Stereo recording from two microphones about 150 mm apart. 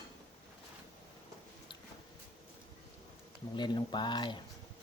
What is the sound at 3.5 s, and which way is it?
Speech, 30° left (ahead or behind).